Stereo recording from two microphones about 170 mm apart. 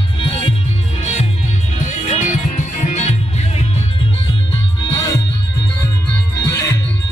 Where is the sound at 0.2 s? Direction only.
35° left (ahead or behind).